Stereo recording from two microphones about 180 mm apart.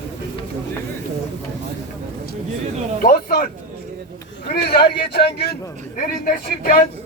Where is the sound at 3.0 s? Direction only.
50° left (ahead or behind).